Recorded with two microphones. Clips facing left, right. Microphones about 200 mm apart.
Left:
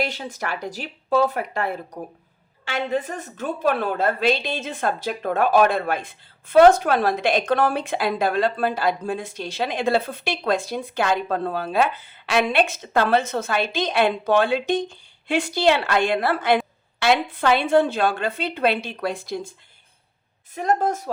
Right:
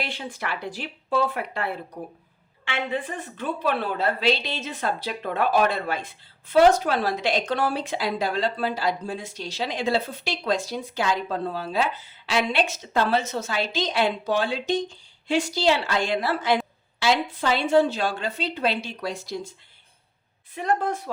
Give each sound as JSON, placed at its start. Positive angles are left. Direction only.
{"t": 0.0, "sound": "speech", "side_deg": 40}